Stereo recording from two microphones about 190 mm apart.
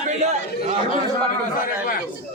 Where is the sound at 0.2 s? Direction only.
35° right (ahead or behind).